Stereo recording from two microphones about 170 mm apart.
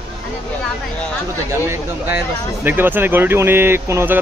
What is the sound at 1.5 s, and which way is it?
Speech, 15° right (ahead or behind).